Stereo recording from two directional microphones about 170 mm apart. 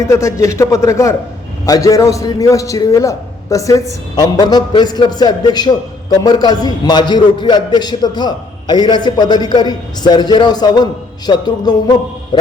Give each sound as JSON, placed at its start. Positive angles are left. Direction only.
{"t": 0.0, "sound": "a man's voice", "side_deg": 15}
{"t": 12.3, "sound": "music", "side_deg": 25}